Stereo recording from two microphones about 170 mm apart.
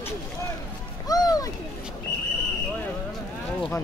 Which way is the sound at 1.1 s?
20° left (ahead or behind).